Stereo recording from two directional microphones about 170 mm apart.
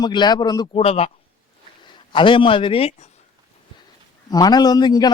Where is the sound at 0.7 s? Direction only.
35° left (ahead or behind).